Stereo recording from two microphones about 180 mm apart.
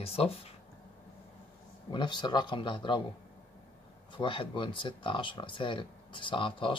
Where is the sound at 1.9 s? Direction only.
25° left (ahead or behind).